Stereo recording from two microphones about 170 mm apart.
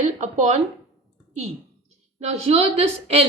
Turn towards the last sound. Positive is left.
turn(degrees=-35)  # may be behind; listen again after turning